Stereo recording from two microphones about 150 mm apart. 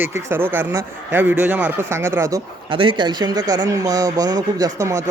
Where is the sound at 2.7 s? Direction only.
35° right (ahead or behind).